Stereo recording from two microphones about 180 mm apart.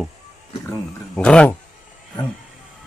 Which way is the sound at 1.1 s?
5° left (ahead or behind).